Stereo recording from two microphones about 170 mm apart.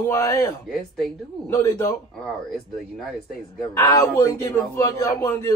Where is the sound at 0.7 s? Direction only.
Centre (ahead or behind).